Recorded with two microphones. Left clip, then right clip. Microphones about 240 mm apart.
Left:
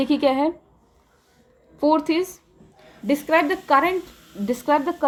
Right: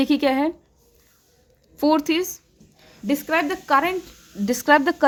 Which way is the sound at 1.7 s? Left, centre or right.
Right.